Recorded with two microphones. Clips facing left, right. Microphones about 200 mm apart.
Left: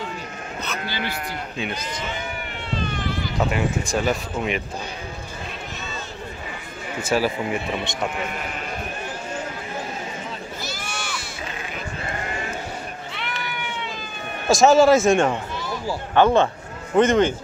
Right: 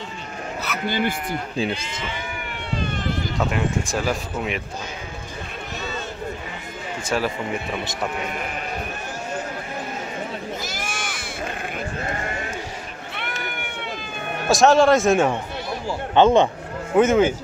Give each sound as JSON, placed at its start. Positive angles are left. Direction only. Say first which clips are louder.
{"t": 0.8, "sound": "speech", "louder": "right 10 dB", "side_deg": -50}
{"t": 3.3, "sound": "speech", "louder": "left 2 dB", "side_deg": 0}
{"t": 7.0, "sound": "speech", "louder": "left 3 dB", "side_deg": 5}
{"t": 10.6, "sound": "goat", "louder": "right 1 dB", "side_deg": -50}
{"t": 13.1, "sound": "run", "louder": "right 3 dB", "side_deg": -55}
{"t": 14.5, "sound": "speech", "louder": "left 1 dB", "side_deg": 0}
{"t": 16.2, "sound": "speech", "louder": "right 2 dB", "side_deg": -20}
{"t": 16.9, "sound": "a man's voice", "louder": "right 1 dB", "side_deg": -5}